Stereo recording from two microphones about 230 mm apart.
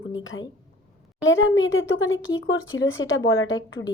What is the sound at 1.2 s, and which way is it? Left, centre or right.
Speech, left.